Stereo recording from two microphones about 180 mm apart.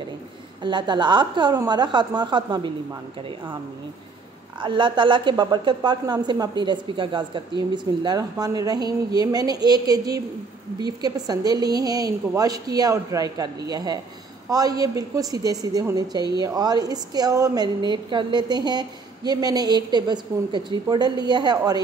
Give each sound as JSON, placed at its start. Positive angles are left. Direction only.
{"t": 0.6, "sound": "a woman's voice", "side_deg": -25}
{"t": 4.6, "sound": "a woman's voice", "side_deg": -25}